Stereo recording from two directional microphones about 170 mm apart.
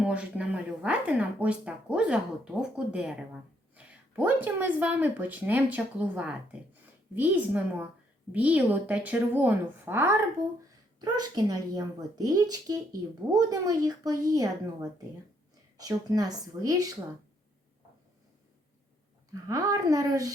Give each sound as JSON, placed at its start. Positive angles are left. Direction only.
{"t": 0.0, "sound": "speech", "side_deg": -5}
{"t": 19.3, "sound": "speech", "side_deg": -20}